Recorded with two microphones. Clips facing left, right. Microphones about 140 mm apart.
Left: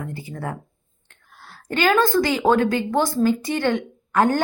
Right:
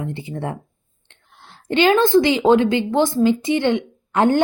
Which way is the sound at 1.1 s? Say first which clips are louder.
Left 1 dB; 25° right (ahead or behind).